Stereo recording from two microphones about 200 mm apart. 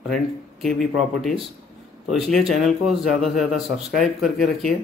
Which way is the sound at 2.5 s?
Centre (ahead or behind).